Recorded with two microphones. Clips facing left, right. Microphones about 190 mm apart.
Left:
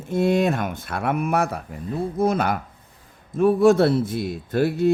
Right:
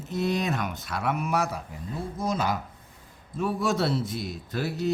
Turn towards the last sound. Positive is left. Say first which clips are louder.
# left 9 dB
turn(degrees=55)  # may be behind; listen again after turning